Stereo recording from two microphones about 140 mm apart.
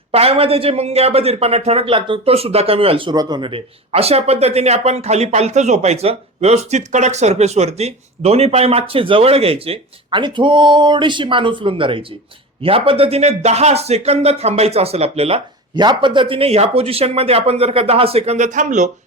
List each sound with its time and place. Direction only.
0.1 s speech: 45° right (ahead or behind)
15.7 s speech: 35° right (ahead or behind); by 18.9 s 60° right (ahead or behind)